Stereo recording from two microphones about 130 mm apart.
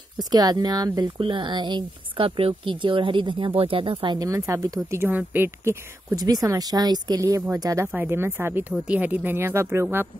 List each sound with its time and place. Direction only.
0.2 s speech: 30° right (ahead or behind)
4.2 s speech: 25° right (ahead or behind)
6.1 s speech: 30° right (ahead or behind)